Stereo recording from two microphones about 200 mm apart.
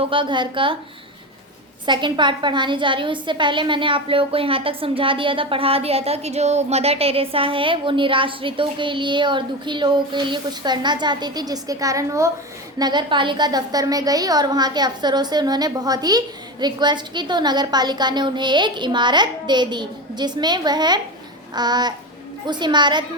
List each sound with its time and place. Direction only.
0.0 s a woman's voice: 25° right (ahead or behind)
1.9 s a woman's voice: 25° right (ahead or behind)